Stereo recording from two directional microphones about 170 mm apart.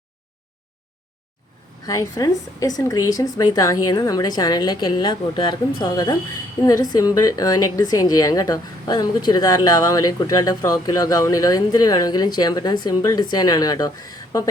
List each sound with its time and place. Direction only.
1.9 s a woman's voice: 20° left (ahead or behind)